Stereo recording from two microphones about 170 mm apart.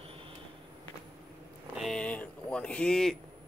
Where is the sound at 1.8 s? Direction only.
5° left (ahead or behind).